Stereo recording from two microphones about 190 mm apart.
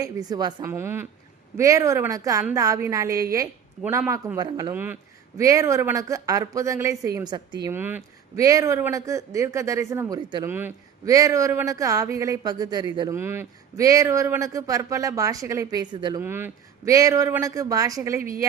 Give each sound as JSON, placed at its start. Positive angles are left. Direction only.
{"t": 0.0, "sound": "a woman's voice", "side_deg": -20}
{"t": 4.7, "sound": "speech", "side_deg": -10}
{"t": 7.7, "sound": "speech", "side_deg": -10}
{"t": 10.5, "sound": "speech", "side_deg": -10}
{"t": 16.2, "sound": "speech", "side_deg": -10}